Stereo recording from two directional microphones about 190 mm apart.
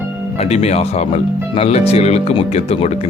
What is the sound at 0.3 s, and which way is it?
Speech, 35° left (ahead or behind).